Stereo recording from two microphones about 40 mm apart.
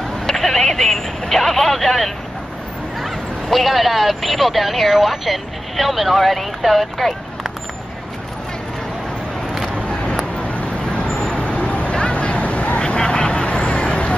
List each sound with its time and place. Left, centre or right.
0.3 s vehicle: centre
3.0 s speech: centre
9.8 s a sound: left
10.5 s vehicle: left
11.5 s duck: left